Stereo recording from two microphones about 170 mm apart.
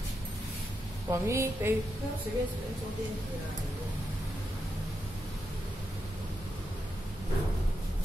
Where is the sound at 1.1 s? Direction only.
15° right (ahead or behind).